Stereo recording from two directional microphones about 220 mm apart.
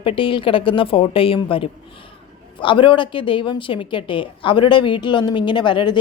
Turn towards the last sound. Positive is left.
turn(degrees=20)  # may be behind; listen again after turning